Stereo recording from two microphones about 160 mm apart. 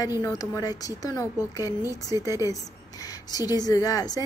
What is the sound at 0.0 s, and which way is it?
Speech, 20° left (ahead or behind).